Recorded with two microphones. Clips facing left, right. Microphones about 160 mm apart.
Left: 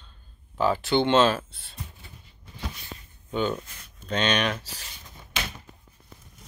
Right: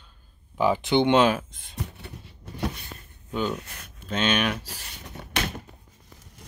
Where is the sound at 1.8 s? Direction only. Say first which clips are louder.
Right 7 dB; 70° right (ahead or behind).